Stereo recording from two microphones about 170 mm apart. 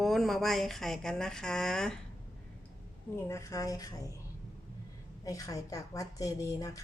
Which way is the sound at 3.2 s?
15° left (ahead or behind).